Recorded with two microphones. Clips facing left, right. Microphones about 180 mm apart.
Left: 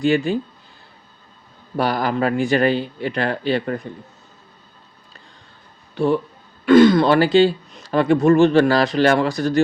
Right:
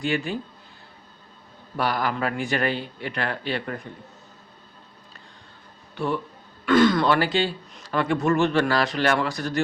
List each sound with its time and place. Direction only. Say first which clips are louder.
0.0 s speech: left 8 dB; 30° left (ahead or behind)
1.7 s speech: left 5 dB; 35° left (ahead or behind)
6.7 s speech: left 7 dB; 25° left (ahead or behind)